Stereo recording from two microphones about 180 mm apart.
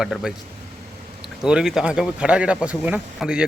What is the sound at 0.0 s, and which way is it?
Speech, centre (ahead or behind).